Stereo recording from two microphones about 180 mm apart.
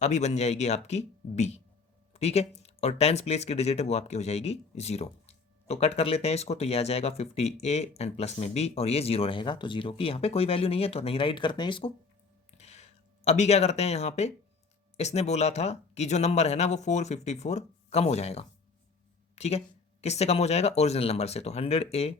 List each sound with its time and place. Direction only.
0.0 s speech: 40° left (ahead or behind)
12.5 s a sound: 40° left (ahead or behind)
14.9 s speech: 35° left (ahead or behind)